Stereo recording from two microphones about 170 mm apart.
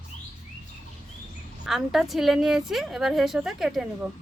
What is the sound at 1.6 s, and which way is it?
A woman's voice, centre (ahead or behind).